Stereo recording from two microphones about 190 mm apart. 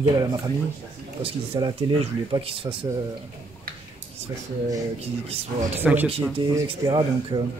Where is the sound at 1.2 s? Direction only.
30° right (ahead or behind).